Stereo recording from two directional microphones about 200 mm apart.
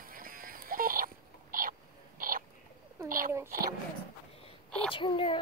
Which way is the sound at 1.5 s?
40° right (ahead or behind).